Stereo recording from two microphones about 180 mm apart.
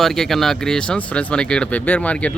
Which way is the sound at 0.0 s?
Centre (ahead or behind).